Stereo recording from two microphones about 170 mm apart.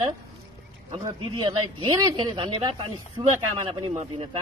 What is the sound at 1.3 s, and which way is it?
Speech, 30° right (ahead or behind).